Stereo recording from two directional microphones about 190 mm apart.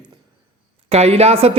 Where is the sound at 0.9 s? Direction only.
35° right (ahead or behind).